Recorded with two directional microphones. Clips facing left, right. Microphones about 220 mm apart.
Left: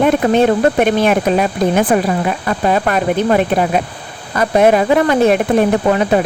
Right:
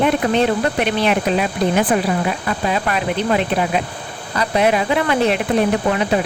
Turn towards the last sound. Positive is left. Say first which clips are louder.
# left 4 dB
turn(degrees=45)  # may be behind; listen again after turning